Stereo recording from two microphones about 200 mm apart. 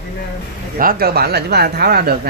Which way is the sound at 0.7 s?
45° right (ahead or behind).